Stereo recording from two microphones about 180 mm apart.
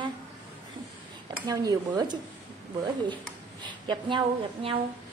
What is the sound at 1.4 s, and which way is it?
Speech, 20° right (ahead or behind).